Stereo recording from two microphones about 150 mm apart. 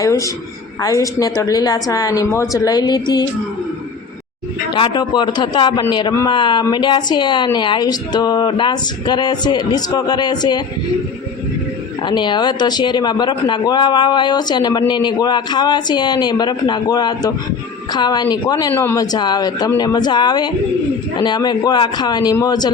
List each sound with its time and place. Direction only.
0.0 s speech: 20° left (ahead or behind)
4.7 s a man's voice: 30° left (ahead or behind)
12.0 s speech: 30° left (ahead or behind)
18.7 s speech: 15° left (ahead or behind)